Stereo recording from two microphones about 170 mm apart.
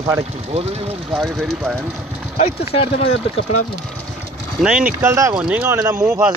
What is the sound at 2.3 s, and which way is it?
Speech, 35° left (ahead or behind).